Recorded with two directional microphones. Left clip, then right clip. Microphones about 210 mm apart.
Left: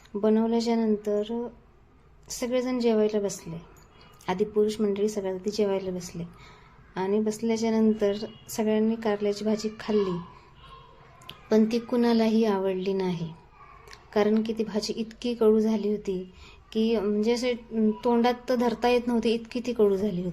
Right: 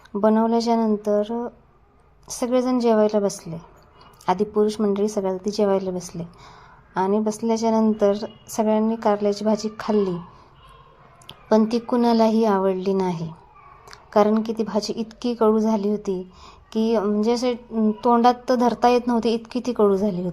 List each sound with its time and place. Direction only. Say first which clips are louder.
0.1 s a woman's voice: right 6 dB; 20° right (ahead or behind)
11.3 s a woman's voice: right 5 dB; 15° right (ahead or behind)